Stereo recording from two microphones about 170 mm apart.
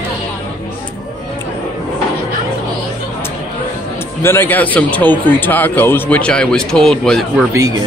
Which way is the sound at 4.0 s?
15° left (ahead or behind).